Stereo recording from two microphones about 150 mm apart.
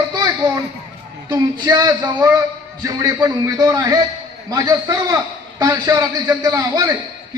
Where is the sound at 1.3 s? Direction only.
30° right (ahead or behind).